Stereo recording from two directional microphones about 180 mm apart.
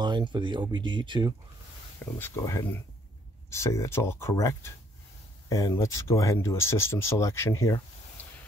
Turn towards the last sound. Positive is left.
turn(degrees=15)  # may be behind; listen again after turning